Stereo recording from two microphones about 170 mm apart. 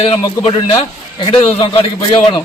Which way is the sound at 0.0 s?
30° left (ahead or behind).